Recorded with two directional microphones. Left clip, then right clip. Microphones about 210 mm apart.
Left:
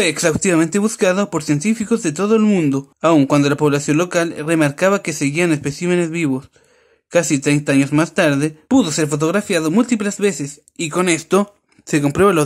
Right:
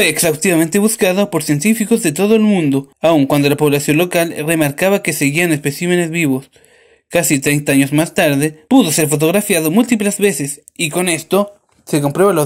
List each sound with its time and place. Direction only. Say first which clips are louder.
0.0 s speech: right 3 dB; 15° left (ahead or behind)